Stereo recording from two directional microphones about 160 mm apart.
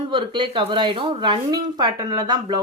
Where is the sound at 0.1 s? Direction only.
30° right (ahead or behind).